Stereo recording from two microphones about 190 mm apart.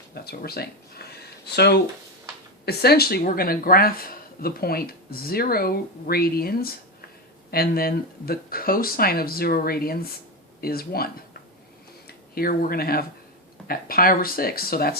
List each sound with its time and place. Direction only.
0.1 s speech: 55° left (ahead or behind)